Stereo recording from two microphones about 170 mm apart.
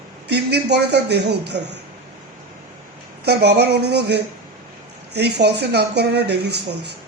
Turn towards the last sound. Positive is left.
turn(degrees=-75)  # may be behind; listen again after turning